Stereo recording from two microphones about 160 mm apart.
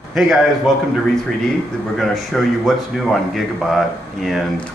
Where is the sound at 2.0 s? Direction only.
Centre (ahead or behind).